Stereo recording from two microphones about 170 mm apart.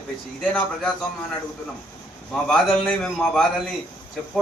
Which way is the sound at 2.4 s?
5° left (ahead or behind).